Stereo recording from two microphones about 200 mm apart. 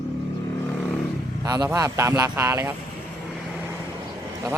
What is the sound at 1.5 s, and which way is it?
Speech, 20° right (ahead or behind).